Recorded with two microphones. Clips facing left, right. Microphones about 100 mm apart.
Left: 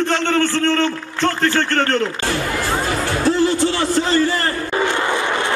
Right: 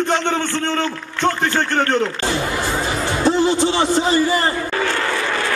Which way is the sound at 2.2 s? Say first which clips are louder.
Even; 20° right (ahead or behind).